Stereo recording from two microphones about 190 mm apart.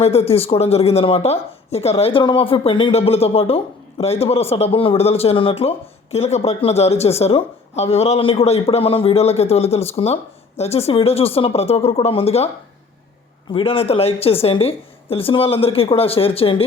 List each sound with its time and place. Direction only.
0.0 s speech: 30° left (ahead or behind)
13.5 s speech: 30° left (ahead or behind)